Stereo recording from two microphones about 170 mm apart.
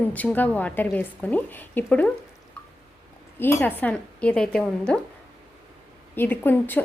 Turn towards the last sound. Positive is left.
turn(degrees=10)  # may be behind; listen again after turning